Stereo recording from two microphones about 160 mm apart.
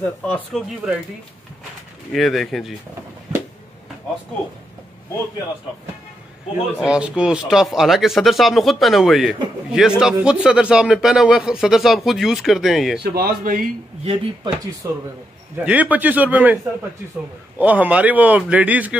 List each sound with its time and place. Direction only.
0.0 s speech: 5° left (ahead or behind)
2.1 s speech: centre (ahead or behind)
6.8 s speech: 5° right (ahead or behind)
13.0 s a man's voice: 80° right; by 13.7 s 60° right (ahead or behind)
14.0 s speech: 35° right (ahead or behind)
14.8 s speech: 20° right (ahead or behind)
15.6 s speech: 10° right (ahead or behind)
17.6 s speech: 10° right (ahead or behind)